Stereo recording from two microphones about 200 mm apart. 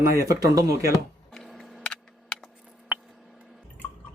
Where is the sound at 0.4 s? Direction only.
15° right (ahead or behind).